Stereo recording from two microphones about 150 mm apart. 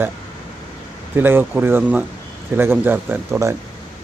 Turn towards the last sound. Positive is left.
turn(degrees=-15)  # may be behind; listen again after turning